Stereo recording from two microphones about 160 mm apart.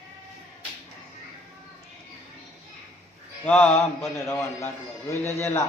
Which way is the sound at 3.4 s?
10° left (ahead or behind).